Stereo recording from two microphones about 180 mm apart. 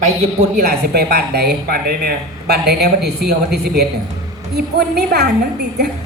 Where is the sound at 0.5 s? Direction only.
60° right (ahead or behind).